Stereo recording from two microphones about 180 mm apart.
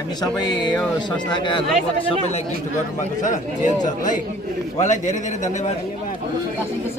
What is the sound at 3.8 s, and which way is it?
A man's voice, 45° left (ahead or behind).